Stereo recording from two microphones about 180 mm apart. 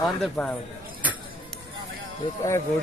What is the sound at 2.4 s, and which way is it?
Speech, 15° left (ahead or behind).